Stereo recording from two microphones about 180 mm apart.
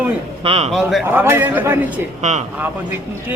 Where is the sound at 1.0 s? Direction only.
15° right (ahead or behind).